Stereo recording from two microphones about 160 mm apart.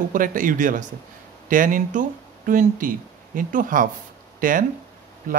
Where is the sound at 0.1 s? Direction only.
55° right (ahead or behind).